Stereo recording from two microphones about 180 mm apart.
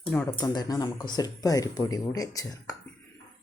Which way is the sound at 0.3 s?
20° left (ahead or behind).